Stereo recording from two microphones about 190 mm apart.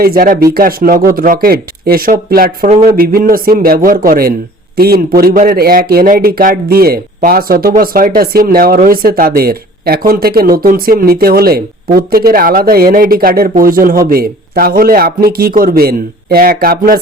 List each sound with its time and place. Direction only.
0.0 s speech: 50° right (ahead or behind)